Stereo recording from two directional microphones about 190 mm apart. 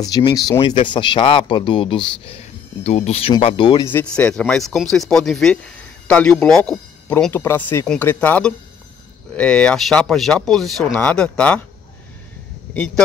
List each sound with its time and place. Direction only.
0.0 s speech: 20° left (ahead or behind)
3.9 s speech: 5° left (ahead or behind)
12.7 s speech: 5° left (ahead or behind)